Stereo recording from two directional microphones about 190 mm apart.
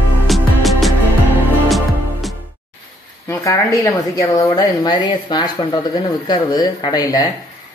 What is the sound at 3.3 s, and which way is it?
Speech, 15° left (ahead or behind).